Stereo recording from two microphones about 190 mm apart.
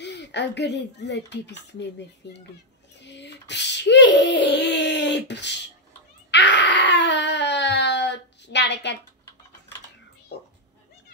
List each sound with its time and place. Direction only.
0.0 s speech: 65° left (ahead or behind)
3.0 s female singing: 65° left (ahead or behind)
6.3 s a sound: 65° left (ahead or behind)